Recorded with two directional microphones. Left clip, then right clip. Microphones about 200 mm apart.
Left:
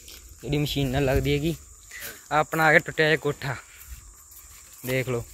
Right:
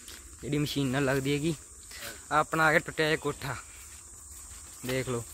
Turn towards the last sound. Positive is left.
turn(degrees=0)  # may be behind; listen again after turning